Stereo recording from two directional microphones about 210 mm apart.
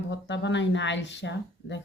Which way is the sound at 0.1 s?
60° left (ahead or behind).